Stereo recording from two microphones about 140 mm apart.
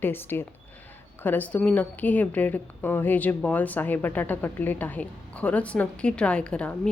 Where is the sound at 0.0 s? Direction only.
15° left (ahead or behind).